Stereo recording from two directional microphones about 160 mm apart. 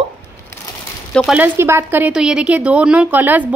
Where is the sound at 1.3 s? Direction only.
10° right (ahead or behind).